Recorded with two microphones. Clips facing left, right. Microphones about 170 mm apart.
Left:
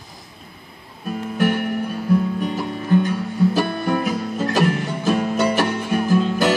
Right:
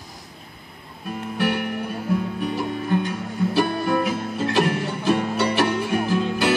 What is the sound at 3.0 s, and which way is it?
Music, 40° left (ahead or behind).